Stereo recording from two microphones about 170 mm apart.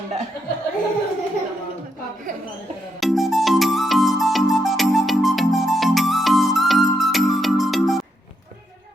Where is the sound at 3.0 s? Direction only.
Centre (ahead or behind).